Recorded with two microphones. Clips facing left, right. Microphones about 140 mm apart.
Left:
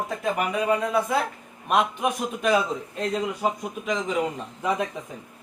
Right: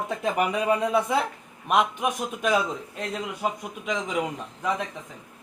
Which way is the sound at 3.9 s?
15° right (ahead or behind).